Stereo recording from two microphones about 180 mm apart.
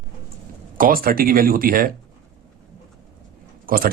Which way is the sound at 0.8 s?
50° right (ahead or behind).